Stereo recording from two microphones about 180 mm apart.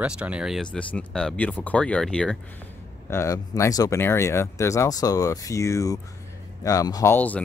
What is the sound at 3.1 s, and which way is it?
Speech, 15° left (ahead or behind).